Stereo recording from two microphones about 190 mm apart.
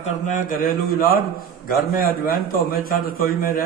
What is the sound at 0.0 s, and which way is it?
A man's voice, 45° left (ahead or behind).